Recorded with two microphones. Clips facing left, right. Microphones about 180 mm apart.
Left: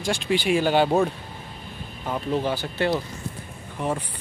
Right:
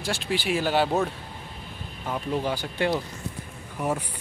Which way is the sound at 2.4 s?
10° right (ahead or behind).